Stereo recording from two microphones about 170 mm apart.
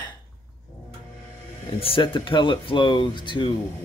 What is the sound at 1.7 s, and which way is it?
Speech, 35° left (ahead or behind).